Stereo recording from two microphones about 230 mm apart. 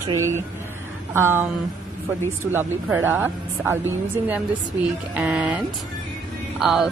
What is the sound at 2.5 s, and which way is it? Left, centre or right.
Speech, centre.